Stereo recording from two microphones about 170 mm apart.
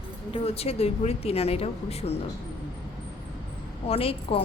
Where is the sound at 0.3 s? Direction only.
35° left (ahead or behind).